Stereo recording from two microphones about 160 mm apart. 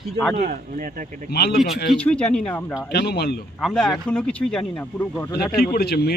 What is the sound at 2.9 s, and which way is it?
Speech, 90° left.